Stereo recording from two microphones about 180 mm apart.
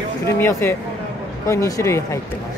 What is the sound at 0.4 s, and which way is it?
Speech, 15° left (ahead or behind).